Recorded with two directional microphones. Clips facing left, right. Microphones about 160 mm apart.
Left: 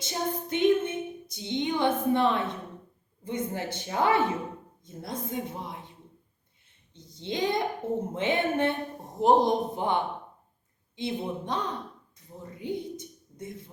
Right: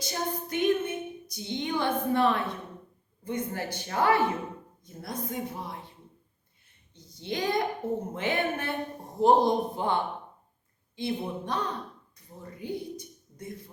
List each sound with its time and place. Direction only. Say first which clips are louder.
0.0 s female singing: left 1 dB; 25° left (ahead or behind)
3.2 s a woman's voice: left 1 dB; 20° left (ahead or behind)
6.9 s a woman's voice: left 1 dB; 25° left (ahead or behind)
12.5 s a sound: left 2 dB; 20° left (ahead or behind)